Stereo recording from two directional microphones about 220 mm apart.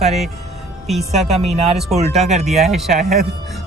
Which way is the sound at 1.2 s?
30° right (ahead or behind).